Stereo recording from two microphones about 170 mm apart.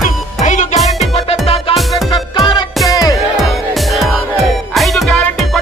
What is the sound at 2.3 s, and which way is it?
Music, 25° left (ahead or behind).